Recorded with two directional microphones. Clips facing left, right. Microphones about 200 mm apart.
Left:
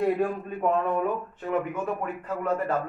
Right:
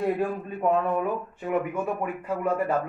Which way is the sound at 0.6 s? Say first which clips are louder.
Right 1 dB; 5° right (ahead or behind).